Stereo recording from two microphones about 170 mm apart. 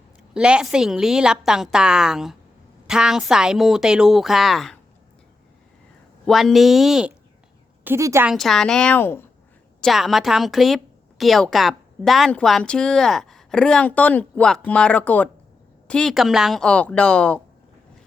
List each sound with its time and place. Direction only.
0.3 s a woman's voice: 5° right (ahead or behind)
6.2 s a woman's voice: centre (ahead or behind)
7.9 s a woman's voice: 15° right (ahead or behind)
8.3 s a woman's voice: centre (ahead or behind)
9.8 s a woman's voice: centre (ahead or behind)